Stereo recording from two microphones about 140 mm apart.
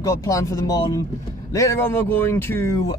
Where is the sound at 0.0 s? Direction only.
20° left (ahead or behind).